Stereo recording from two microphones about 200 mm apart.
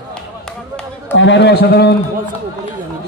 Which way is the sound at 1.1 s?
60° left (ahead or behind).